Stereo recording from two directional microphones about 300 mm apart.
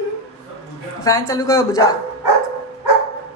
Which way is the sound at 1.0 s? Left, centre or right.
Centre.